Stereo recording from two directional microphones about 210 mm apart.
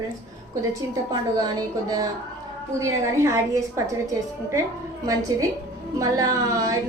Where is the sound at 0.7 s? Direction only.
20° right (ahead or behind).